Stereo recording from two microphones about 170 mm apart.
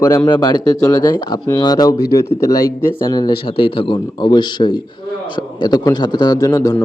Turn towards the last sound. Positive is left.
turn(degrees=20)  # may be behind; listen again after turning